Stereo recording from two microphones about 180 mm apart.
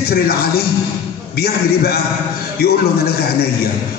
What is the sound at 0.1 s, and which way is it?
Speech, 60° left (ahead or behind).